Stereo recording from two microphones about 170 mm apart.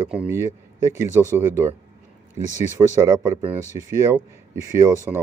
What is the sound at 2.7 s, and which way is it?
Speech, 15° right (ahead or behind).